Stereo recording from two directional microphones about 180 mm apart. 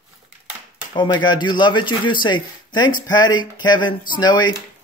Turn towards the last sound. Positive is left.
turn(degrees=25)  # may be behind; listen again after turning